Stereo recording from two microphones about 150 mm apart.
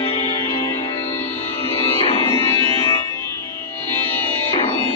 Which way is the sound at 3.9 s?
15° left (ahead or behind).